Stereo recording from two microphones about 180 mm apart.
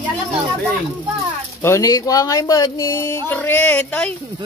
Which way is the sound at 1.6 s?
15° left (ahead or behind).